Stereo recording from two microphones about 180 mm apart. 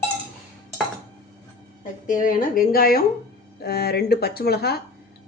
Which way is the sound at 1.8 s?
45° left (ahead or behind).